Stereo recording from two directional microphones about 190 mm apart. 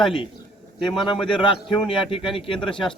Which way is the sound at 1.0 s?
25° left (ahead or behind).